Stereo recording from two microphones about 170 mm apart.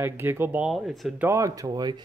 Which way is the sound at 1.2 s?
20° right (ahead or behind).